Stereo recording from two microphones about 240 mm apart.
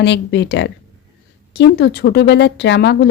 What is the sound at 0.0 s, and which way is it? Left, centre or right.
A woman's voice, left.